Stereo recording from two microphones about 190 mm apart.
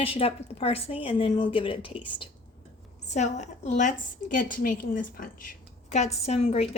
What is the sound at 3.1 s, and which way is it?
A woman's voice, 40° left (ahead or behind).